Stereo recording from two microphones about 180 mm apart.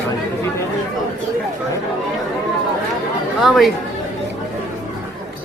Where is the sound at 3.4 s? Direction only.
Centre (ahead or behind).